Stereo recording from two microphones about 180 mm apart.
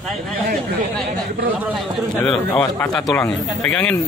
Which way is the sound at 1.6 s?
Centre (ahead or behind).